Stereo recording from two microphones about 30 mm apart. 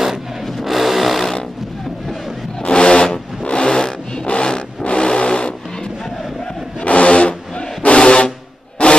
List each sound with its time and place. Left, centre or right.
0.6 s vehicle: centre
2.6 s vehicle: left
6.8 s vehicle: left
8.8 s a sound: left